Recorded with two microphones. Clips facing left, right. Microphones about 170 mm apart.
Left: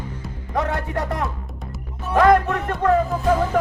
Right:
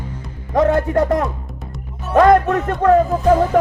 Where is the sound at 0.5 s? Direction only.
40° right (ahead or behind).